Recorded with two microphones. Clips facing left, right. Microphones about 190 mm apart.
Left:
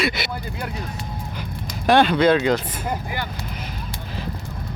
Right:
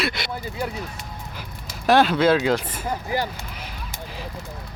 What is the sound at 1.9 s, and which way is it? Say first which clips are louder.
Speech: left 1 dB; centre (ahead or behind).